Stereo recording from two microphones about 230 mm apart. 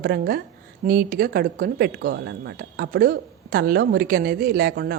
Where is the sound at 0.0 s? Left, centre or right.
Right.